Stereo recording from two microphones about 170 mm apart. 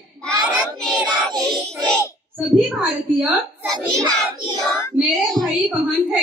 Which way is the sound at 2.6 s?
10° right (ahead or behind).